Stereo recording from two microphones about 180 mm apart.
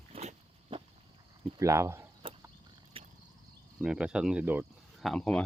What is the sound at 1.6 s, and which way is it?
Speech, 15° right (ahead or behind).